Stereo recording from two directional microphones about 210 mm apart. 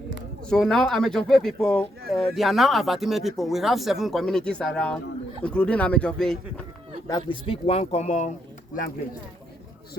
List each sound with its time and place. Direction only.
0.5 s speech: centre (ahead or behind)
7.1 s a man's voice: 20° left (ahead or behind)